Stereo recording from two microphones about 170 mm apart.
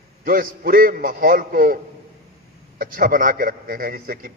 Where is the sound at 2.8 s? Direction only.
55° right (ahead or behind).